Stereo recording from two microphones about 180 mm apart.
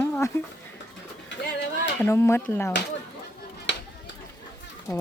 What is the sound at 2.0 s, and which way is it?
Speech, 15° left (ahead or behind).